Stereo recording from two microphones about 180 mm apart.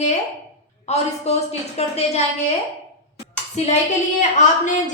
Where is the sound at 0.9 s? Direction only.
35° left (ahead or behind).